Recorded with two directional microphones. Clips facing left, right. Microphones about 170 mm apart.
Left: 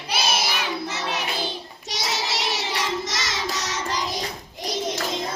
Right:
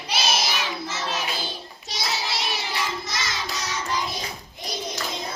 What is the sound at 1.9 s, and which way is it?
Child singing, 75° left (ahead or behind).